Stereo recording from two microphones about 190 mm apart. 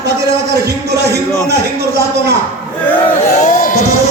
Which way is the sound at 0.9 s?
60° right (ahead or behind).